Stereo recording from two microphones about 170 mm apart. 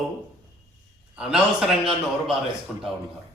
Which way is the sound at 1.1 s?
5° right (ahead or behind).